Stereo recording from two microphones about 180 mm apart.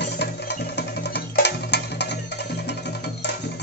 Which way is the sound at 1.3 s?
70° left (ahead or behind).